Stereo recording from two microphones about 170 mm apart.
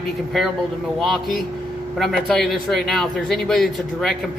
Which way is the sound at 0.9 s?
Centre (ahead or behind).